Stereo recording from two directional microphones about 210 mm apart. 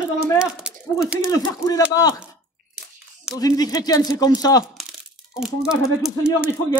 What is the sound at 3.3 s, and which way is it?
A man's voice, 20° left (ahead or behind).